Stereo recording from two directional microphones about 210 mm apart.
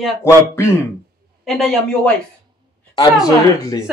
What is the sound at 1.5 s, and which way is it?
Speech, centre (ahead or behind).